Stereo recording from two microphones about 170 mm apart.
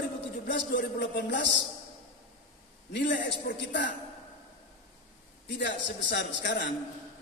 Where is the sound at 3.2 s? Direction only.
90° left.